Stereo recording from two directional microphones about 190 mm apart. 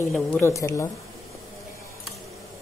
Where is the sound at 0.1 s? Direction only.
10° left (ahead or behind).